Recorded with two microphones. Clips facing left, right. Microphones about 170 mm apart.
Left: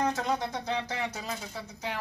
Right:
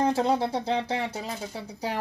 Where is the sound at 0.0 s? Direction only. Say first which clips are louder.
Right 6 dB; 30° right (ahead or behind).